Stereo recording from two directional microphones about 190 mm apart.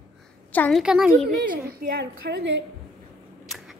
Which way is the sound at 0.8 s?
5° right (ahead or behind).